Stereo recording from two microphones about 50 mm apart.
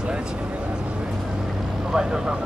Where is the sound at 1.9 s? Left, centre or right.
Centre.